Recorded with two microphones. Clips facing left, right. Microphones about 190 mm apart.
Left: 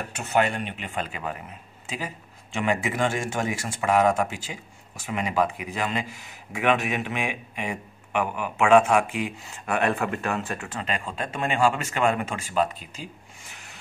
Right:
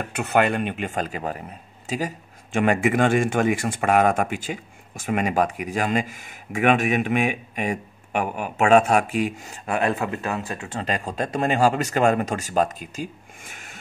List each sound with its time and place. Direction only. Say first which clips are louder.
0.1 s speech: right 3 dB; 55° right (ahead or behind); by 9.5 s 40° right (ahead or behind)
9.7 s speech: right 1 dB; 25° right (ahead or behind)
10.8 s speech: right 6 dB; 40° right (ahead or behind)